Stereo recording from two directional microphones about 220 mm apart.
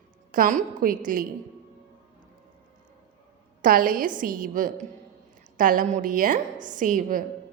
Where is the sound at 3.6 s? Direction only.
40° right (ahead or behind).